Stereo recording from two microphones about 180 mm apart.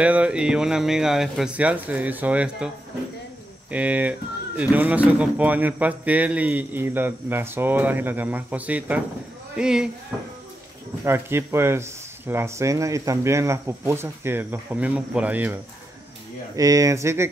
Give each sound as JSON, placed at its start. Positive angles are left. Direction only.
{"t": 0.0, "sound": "speech", "side_deg": -5}
{"t": 3.7, "sound": "speech", "side_deg": -10}
{"t": 11.1, "sound": "speech", "side_deg": -15}